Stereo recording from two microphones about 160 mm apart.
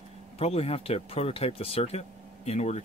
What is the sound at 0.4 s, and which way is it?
Speech, 40° left (ahead or behind).